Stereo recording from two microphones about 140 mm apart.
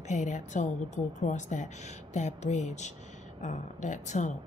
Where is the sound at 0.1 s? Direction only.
60° left (ahead or behind).